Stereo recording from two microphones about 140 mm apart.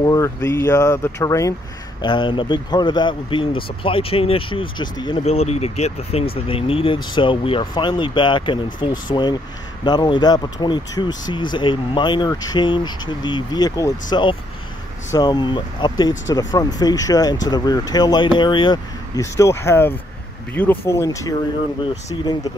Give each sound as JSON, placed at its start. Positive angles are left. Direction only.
{"t": 0.0, "sound": "speech", "side_deg": 25}
{"t": 2.0, "sound": "speech", "side_deg": 35}
{"t": 5.2, "sound": "speech", "side_deg": 50}
{"t": 15.1, "sound": "speech", "side_deg": 30}
{"t": 19.1, "sound": "speech", "side_deg": 20}